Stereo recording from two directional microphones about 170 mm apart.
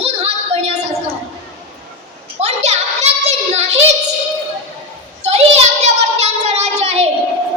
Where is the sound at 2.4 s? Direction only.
40° right (ahead or behind).